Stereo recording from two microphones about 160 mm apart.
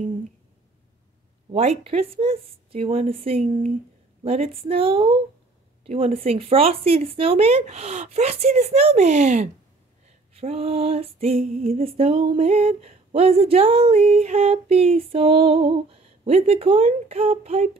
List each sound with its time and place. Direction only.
1.5 s female singing: 40° right (ahead or behind)